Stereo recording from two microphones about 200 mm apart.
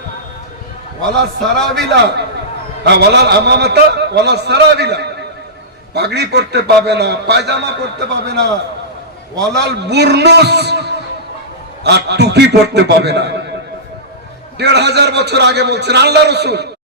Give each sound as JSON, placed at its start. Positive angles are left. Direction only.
{"t": 1.7, "sound": "a man's voice", "side_deg": -60}
{"t": 9.5, "sound": "a man's voice", "side_deg": -55}
{"t": 14.6, "sound": "a man's voice", "side_deg": -55}